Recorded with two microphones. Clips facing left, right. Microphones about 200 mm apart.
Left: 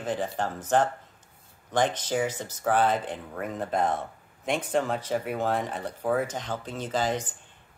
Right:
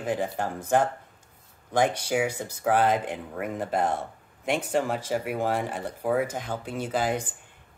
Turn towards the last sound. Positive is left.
turn(degrees=-10)  # may be behind; listen again after turning